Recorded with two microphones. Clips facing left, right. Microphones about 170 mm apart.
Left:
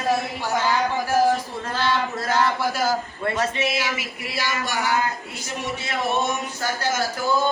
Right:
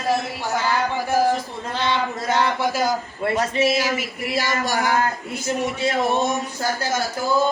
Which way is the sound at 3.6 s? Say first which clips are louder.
Right 5 dB; 40° right (ahead or behind).